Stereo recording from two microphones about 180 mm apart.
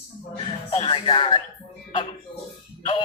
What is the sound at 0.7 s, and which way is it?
Music, 30° left (ahead or behind).